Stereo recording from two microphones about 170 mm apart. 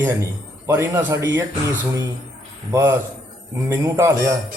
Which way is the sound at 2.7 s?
10° right (ahead or behind).